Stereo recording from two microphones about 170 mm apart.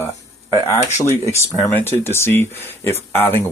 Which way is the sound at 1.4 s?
15° left (ahead or behind).